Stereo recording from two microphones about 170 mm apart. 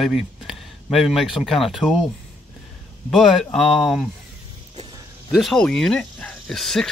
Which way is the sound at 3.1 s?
Centre (ahead or behind).